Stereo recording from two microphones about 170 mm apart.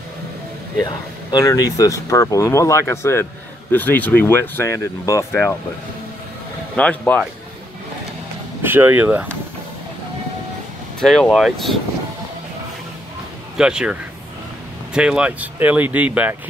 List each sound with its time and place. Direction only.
0.8 s speech: 20° left (ahead or behind)
6.8 s speech: 10° left (ahead or behind)
8.6 s speech: 10° right (ahead or behind)
11.0 s speech: centre (ahead or behind)
13.6 s speech: 5° right (ahead or behind)
15.0 s speech: 5° right (ahead or behind)